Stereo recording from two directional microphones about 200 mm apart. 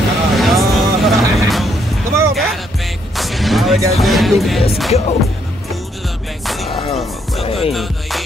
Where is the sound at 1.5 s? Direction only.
Centre (ahead or behind).